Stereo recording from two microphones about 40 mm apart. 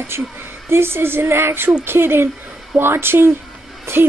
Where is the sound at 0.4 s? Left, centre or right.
Right.